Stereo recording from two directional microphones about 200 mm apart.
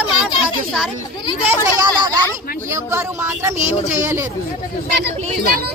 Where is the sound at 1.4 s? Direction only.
15° right (ahead or behind).